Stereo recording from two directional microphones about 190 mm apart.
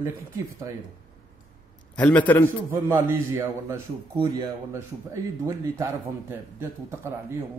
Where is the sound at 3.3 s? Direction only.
15° right (ahead or behind).